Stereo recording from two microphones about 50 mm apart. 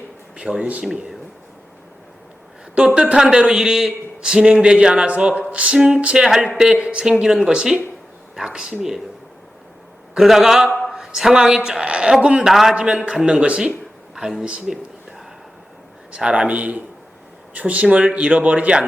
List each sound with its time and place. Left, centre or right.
0.4 s a man's voice: centre
2.7 s a man's voice: right
10.2 s a woman's voice: centre
12.5 s a woman's voice: centre
12.7 s a man's voice: centre
16.1 s a man's voice: centre